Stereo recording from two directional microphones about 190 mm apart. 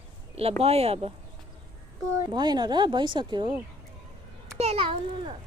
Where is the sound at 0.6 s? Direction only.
30° right (ahead or behind).